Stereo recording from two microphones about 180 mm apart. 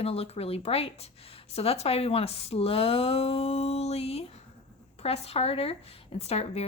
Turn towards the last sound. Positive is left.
turn(degrees=35)  # may be behind; listen again after turning